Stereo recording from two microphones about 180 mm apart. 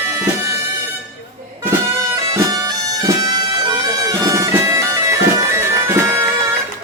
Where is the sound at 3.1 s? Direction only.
25° right (ahead or behind).